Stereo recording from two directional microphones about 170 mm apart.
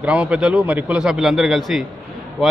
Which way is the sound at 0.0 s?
5° right (ahead or behind).